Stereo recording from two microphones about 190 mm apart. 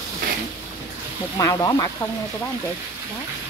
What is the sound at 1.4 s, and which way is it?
Speech, 20° left (ahead or behind).